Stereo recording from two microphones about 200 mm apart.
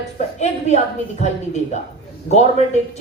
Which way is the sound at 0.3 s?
35° left (ahead or behind).